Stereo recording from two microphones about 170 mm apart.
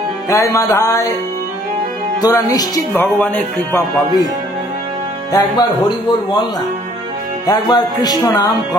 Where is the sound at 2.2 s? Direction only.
20° left (ahead or behind).